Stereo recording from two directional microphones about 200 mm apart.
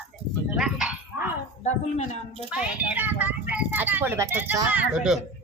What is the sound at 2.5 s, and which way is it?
Speech, 10° right (ahead or behind).